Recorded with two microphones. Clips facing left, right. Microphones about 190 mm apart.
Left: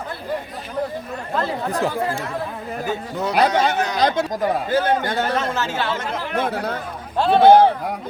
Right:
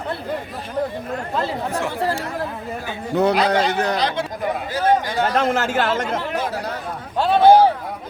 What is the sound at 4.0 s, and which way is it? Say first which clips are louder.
A man's voice: left 3 dB; 45° left (ahead or behind).